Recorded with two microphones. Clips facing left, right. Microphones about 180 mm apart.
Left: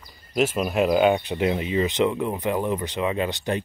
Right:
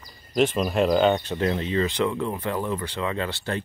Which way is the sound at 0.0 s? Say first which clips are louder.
Right 1 dB; 5° left (ahead or behind).